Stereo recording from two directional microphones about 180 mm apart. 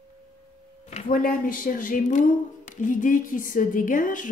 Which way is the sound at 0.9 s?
50° left (ahead or behind).